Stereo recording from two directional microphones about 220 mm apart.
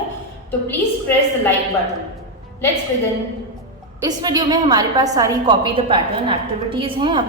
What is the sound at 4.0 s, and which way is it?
A woman's voice, 15° right (ahead or behind).